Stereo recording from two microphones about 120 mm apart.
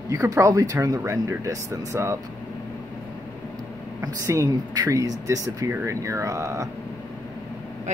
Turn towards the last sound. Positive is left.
turn(degrees=-25)  # may be behind; listen again after turning